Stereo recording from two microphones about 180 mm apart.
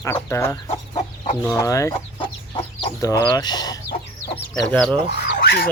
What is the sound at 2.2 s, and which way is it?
Chicken, 20° left (ahead or behind).